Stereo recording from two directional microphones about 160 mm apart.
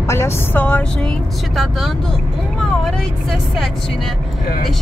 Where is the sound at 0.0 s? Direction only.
15° left (ahead or behind).